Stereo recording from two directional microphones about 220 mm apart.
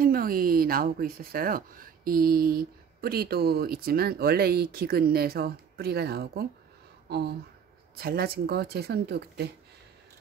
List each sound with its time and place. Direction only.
0.0 s speech: 40° right (ahead or behind)